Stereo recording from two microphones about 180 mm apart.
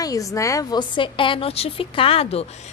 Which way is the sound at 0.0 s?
20° left (ahead or behind).